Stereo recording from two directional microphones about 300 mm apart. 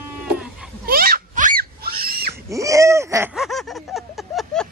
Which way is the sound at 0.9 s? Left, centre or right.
Right.